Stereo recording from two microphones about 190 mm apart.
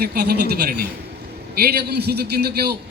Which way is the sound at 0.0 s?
55° right (ahead or behind).